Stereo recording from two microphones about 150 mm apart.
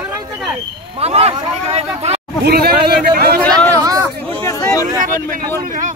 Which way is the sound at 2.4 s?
90° right.